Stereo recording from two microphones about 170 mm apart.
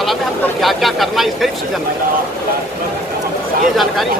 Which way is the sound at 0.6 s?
Centre (ahead or behind).